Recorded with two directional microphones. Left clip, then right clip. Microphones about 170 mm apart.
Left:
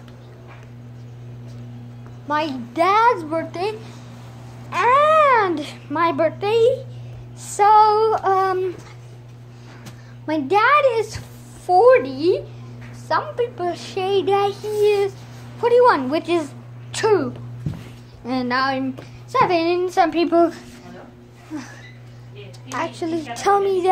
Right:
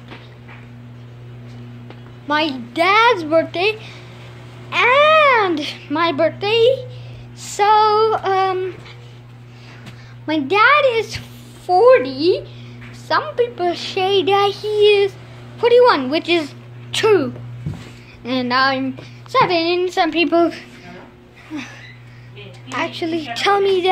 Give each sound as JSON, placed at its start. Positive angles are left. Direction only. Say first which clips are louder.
{"t": 2.2, "sound": "a woman's voice", "louder": "right 4 dB", "side_deg": -5}
{"t": 2.7, "sound": "female singing", "louder": "right 2 dB", "side_deg": 0}
{"t": 3.3, "sound": "speech", "louder": "right 8 dB", "side_deg": -25}
{"t": 4.6, "sound": "cat", "louder": "right 3 dB", "side_deg": -15}
{"t": 5.2, "sound": "a child's voice", "louder": "right 2 dB", "side_deg": -5}
{"t": 7.4, "sound": "female singing", "louder": "even", "side_deg": 0}
{"t": 10.2, "sound": "speech", "louder": "right 3 dB", "side_deg": 0}
{"t": 12.0, "sound": "speech", "louder": "right 3 dB", "side_deg": 35}
{"t": 13.1, "sound": "a child's voice", "louder": "right 3 dB", "side_deg": -10}
{"t": 18.2, "sound": "female singing", "louder": "right 4 dB", "side_deg": 0}
{"t": 19.3, "sound": "a child's voice", "louder": "right 3 dB", "side_deg": -5}
{"t": 19.8, "sound": "female singing", "louder": "right 1 dB", "side_deg": 0}
{"t": 22.7, "sound": "a child's voice", "louder": "right 3 dB", "side_deg": -10}